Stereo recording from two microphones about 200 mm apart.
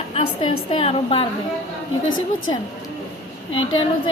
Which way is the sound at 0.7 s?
25° left (ahead or behind).